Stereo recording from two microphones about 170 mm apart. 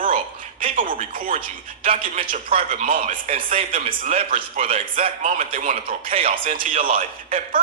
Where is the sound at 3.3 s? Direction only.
35° right (ahead or behind); by 7.0 s 50° right (ahead or behind).